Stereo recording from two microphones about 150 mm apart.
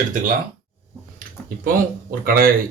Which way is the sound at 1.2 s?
70° right (ahead or behind).